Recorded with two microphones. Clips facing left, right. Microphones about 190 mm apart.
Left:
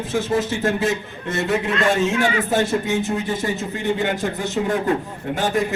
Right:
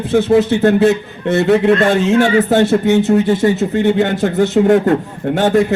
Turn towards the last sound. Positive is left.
turn(degrees=-70)  # may be behind; listen again after turning